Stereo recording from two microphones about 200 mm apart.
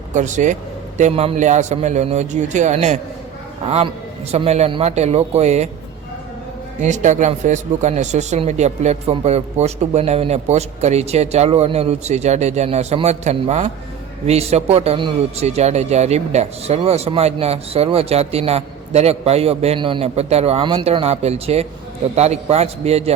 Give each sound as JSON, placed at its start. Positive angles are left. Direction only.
{"t": 0.1, "sound": "a man's voice", "side_deg": -35}
{"t": 6.7, "sound": "a man's voice", "side_deg": -40}